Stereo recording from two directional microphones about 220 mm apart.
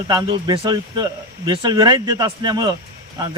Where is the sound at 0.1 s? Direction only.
20° right (ahead or behind).